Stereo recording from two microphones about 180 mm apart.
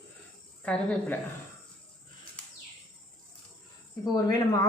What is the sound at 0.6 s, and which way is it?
Speech, 5° left (ahead or behind).